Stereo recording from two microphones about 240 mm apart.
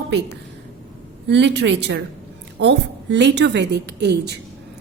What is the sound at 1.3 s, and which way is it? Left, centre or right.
A woman's voice, right.